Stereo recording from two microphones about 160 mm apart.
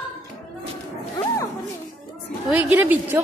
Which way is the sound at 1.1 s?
25° left (ahead or behind).